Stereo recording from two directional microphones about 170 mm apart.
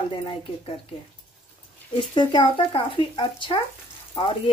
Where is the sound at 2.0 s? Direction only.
30° left (ahead or behind).